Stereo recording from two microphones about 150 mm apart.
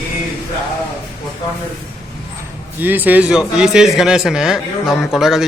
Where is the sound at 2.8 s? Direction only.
10° right (ahead or behind).